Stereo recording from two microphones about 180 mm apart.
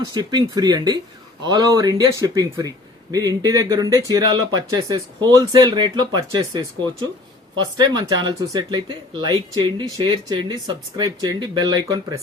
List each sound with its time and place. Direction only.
0.0 s speech: 25° right (ahead or behind)